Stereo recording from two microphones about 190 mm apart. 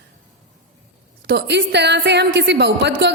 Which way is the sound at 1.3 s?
65° right (ahead or behind).